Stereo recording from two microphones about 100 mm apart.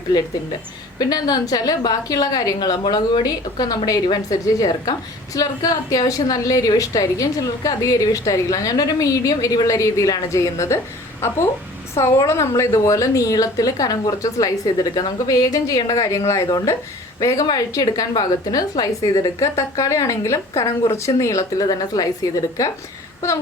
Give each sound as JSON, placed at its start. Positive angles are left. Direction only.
{"t": 0.9, "sound": "a woman's voice", "side_deg": 40}